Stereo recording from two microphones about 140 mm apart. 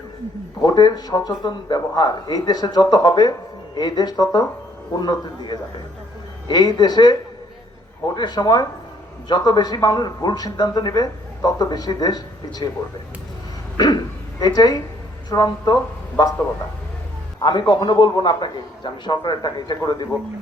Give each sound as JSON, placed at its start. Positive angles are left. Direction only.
{"t": 0.6, "sound": "a man's voice", "side_deg": 30}
{"t": 13.7, "sound": "a sound", "side_deg": 30}
{"t": 15.3, "sound": "speech", "side_deg": 30}
{"t": 17.4, "sound": "a man's voice", "side_deg": 30}